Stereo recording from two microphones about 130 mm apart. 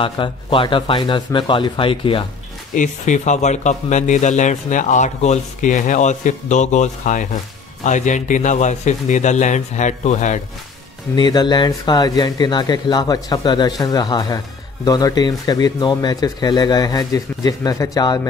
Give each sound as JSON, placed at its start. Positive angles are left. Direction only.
{"t": 0.0, "sound": "speech", "side_deg": 40}
{"t": 2.7, "sound": "speech", "side_deg": 75}
{"t": 11.1, "sound": "speech", "side_deg": 35}